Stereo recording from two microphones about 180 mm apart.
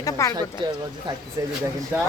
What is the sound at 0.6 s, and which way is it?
Speech, 25° right (ahead or behind).